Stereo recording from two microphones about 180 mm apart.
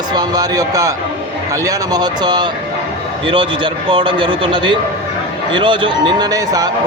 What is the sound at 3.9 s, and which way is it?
Speech, 30° right (ahead or behind).